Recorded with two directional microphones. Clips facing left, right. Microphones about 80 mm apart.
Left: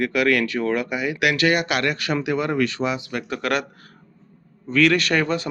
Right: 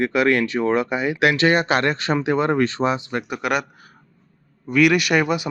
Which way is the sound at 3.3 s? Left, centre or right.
Centre.